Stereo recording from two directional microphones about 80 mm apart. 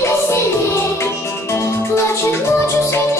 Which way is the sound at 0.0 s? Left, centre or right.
Left.